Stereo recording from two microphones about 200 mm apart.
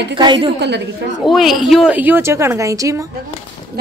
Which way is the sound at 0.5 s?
60° right (ahead or behind).